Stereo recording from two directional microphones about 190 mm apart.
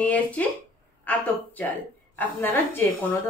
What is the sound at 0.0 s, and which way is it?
A woman's voice, 5° left (ahead or behind).